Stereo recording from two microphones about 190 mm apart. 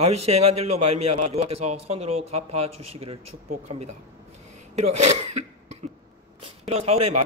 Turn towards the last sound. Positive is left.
turn(degrees=-35)  # may be behind; listen again after turning